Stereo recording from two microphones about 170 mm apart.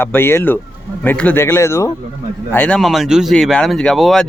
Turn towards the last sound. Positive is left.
turn(degrees=0)  # may be behind; listen again after turning